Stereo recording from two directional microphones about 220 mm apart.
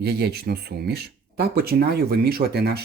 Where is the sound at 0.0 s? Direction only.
45° right (ahead or behind).